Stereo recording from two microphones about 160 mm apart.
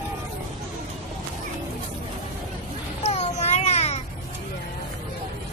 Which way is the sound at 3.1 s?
45° left (ahead or behind).